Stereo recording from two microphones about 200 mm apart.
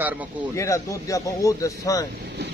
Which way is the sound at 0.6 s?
15° left (ahead or behind).